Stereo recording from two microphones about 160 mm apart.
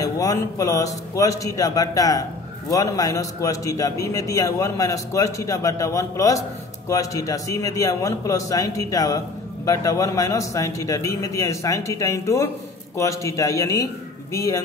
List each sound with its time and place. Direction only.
0.0 s a man's voice: 20° left (ahead or behind)